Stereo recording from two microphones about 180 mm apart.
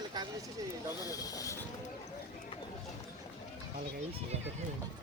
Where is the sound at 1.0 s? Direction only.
20° left (ahead or behind).